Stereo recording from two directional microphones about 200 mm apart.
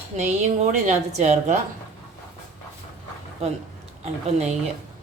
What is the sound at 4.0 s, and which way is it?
Speech, 30° right (ahead or behind).